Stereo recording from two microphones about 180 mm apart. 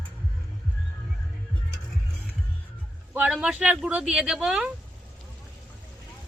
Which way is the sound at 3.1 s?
5° right (ahead or behind).